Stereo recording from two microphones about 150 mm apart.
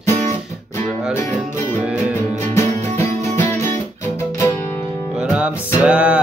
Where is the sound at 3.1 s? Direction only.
50° right (ahead or behind).